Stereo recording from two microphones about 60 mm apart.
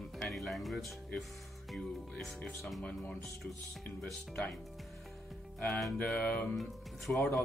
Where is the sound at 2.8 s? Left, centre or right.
Left.